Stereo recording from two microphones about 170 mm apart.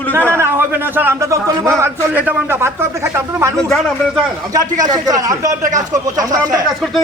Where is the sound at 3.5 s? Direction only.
Centre (ahead or behind).